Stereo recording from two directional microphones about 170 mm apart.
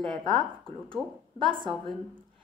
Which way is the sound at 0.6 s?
30° right (ahead or behind).